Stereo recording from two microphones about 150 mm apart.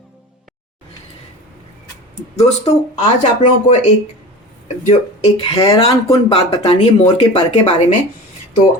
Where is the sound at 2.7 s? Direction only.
45° left (ahead or behind).